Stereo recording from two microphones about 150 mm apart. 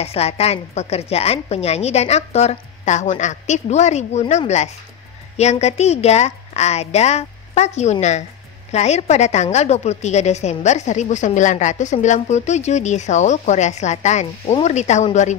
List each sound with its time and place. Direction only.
0.0 s a woman's voice: 45° left (ahead or behind)